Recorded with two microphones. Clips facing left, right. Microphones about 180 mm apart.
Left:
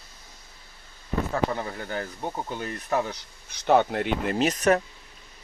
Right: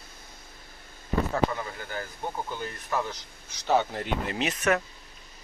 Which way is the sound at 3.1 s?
60° left (ahead or behind).